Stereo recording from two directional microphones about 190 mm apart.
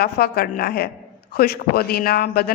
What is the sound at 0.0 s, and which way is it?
A man's voice, 55° left (ahead or behind).